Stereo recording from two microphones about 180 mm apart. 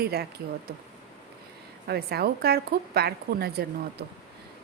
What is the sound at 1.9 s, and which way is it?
A woman's voice, 60° right (ahead or behind).